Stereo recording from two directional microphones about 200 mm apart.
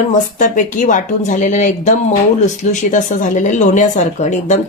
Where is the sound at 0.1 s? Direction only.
40° left (ahead or behind).